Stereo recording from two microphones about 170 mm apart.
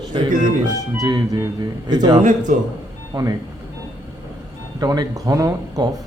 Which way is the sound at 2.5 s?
45° right (ahead or behind).